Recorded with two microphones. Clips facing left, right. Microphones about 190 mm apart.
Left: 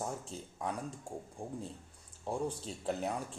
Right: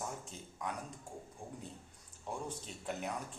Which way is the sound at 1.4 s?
35° left (ahead or behind).